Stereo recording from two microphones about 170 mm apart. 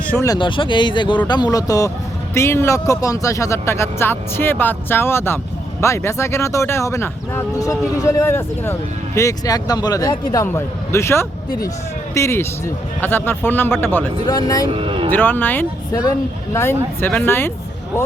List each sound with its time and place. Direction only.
0.1 s speech: 15° left (ahead or behind)
0.3 s speech: 30° left (ahead or behind)
14.7 s music: 30° right (ahead or behind)
15.1 s speech: 10° left (ahead or behind)